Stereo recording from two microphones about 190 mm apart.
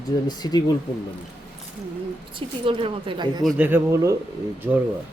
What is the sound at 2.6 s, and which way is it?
Speech, 25° right (ahead or behind).